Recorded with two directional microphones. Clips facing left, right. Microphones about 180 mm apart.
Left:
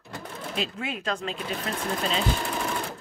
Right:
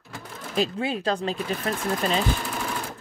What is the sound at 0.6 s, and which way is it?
Speech, 35° right (ahead or behind).